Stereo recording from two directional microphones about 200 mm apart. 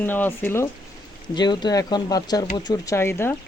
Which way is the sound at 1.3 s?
20° left (ahead or behind).